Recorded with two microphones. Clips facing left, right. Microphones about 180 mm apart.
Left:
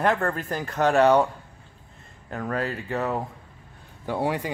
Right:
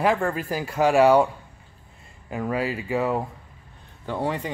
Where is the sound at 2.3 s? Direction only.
10° right (ahead or behind).